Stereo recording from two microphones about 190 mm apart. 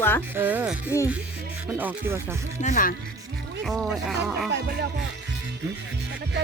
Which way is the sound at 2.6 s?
40° left (ahead or behind).